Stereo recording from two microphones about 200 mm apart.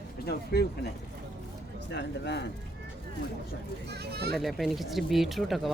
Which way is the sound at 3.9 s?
55° right (ahead or behind).